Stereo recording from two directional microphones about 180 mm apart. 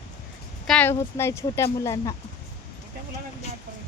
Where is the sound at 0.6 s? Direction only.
5° left (ahead or behind).